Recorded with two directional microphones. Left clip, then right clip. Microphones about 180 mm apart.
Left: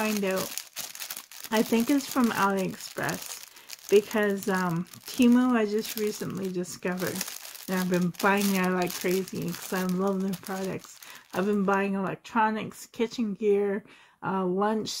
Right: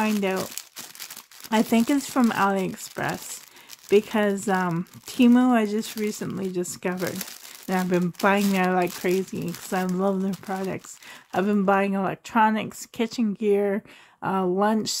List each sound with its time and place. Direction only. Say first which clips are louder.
0.0 s speech: right 3 dB; 40° right (ahead or behind)
1.5 s speech: right 3 dB; 35° right (ahead or behind)
11.3 s speech: right 4 dB; 40° right (ahead or behind)